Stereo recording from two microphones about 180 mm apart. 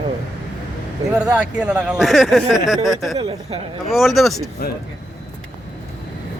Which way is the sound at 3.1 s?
25° right (ahead or behind).